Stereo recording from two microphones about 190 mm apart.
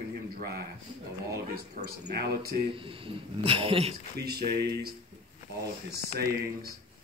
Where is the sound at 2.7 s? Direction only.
30° right (ahead or behind).